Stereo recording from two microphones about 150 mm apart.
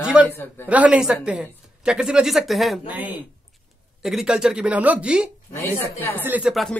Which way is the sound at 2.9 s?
10° right (ahead or behind).